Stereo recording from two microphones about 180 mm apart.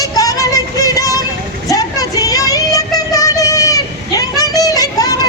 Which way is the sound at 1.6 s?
20° left (ahead or behind).